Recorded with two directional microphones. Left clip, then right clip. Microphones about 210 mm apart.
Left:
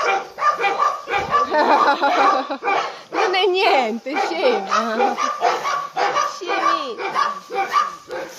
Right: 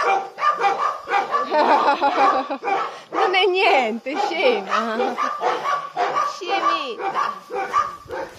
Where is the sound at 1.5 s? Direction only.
10° left (ahead or behind).